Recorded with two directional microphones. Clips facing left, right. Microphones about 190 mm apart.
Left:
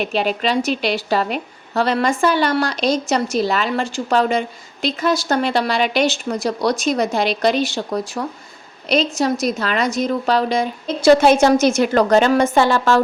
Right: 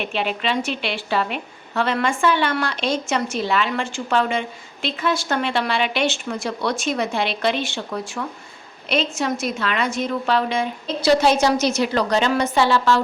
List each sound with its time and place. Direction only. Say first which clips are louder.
0.0 s a woman's voice: left 4 dB; 40° left (ahead or behind)